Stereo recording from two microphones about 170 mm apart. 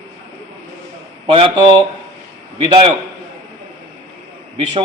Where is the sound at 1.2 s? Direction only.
30° right (ahead or behind).